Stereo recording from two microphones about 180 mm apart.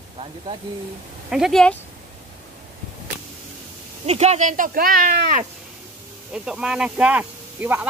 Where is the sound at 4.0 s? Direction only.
35° right (ahead or behind); by 5.4 s 55° right (ahead or behind).